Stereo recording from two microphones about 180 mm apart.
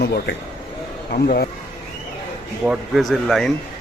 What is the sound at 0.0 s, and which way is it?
Speech, 70° left (ahead or behind).